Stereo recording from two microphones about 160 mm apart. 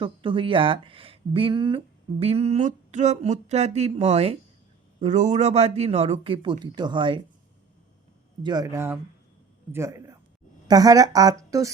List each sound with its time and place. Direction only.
0.0 s speech: 30° right (ahead or behind)
8.4 s a man's voice: 25° right (ahead or behind)